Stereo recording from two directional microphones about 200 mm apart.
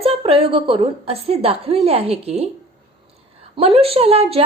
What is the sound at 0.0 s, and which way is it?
A woman's voice, 30° right (ahead or behind).